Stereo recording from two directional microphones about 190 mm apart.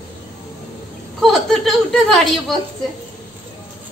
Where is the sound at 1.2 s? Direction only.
Centre (ahead or behind).